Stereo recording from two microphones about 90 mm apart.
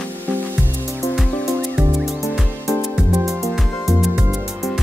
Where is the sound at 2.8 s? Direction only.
5° right (ahead or behind).